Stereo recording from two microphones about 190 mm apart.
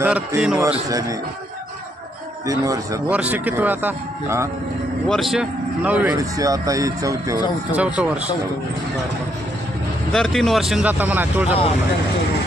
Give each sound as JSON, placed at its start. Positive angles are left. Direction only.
{"t": 0.0, "sound": "speech", "side_deg": -5}
{"t": 0.6, "sound": "speech", "side_deg": -15}
{"t": 2.5, "sound": "speech", "side_deg": -15}
{"t": 5.0, "sound": "speech", "side_deg": 0}
{"t": 7.8, "sound": "speech", "side_deg": -5}
{"t": 10.1, "sound": "speech", "side_deg": 5}